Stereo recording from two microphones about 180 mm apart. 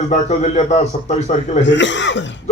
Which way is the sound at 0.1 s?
40° left (ahead or behind).